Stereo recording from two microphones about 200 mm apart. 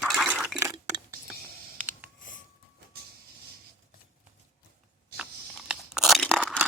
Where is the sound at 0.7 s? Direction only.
15° right (ahead or behind).